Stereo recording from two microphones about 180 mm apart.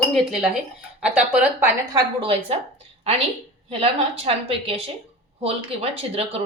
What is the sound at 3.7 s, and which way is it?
Speech, 35° right (ahead or behind).